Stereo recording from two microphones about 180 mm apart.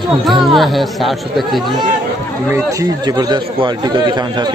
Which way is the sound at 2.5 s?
20° right (ahead or behind).